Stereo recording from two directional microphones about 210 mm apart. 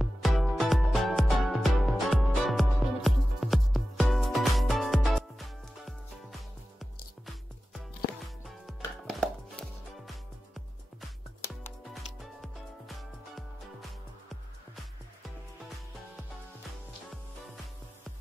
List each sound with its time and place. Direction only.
0.0 s music: centre (ahead or behind)